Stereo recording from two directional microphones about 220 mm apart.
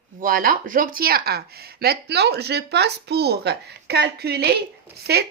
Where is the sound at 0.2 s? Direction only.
40° right (ahead or behind).